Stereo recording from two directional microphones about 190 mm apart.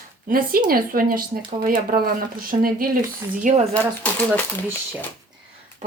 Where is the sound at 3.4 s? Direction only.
35° right (ahead or behind).